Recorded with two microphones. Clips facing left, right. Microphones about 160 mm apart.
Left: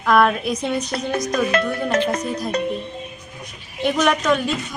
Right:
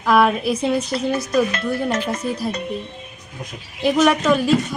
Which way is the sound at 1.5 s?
60° left (ahead or behind).